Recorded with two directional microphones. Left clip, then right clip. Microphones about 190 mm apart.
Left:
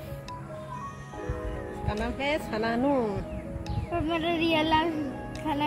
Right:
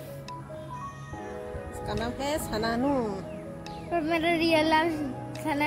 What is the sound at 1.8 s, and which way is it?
Speech, 10° right (ahead or behind).